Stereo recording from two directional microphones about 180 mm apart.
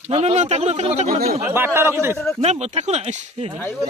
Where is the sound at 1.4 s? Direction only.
10° right (ahead or behind).